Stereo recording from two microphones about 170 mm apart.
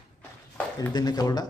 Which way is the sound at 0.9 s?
25° left (ahead or behind).